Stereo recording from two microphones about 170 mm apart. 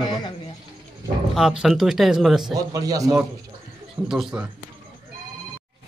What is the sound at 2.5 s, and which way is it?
Speech, 20° right (ahead or behind).